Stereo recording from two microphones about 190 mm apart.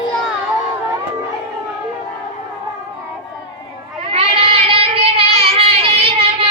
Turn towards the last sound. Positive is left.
turn(degrees=-30)  # may be behind; listen again after turning